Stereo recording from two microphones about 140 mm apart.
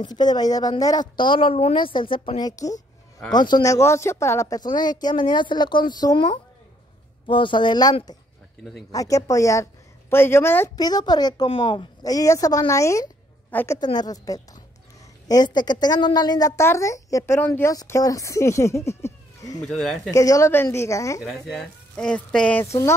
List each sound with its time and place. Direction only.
0.0 s a woman's voice: 30° left (ahead or behind)
10.8 s a woman's voice: 30° left (ahead or behind); by 13.7 s 15° left (ahead or behind)
13.7 s a woman's voice: 30° left (ahead or behind)
19.6 s speech: 5° left (ahead or behind)
20.1 s a woman's voice: 25° left (ahead or behind)
21.2 s speech: centre (ahead or behind); by 22.9 s 20° left (ahead or behind)